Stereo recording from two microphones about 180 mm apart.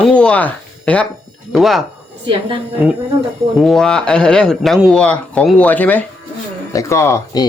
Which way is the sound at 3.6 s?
Centre (ahead or behind).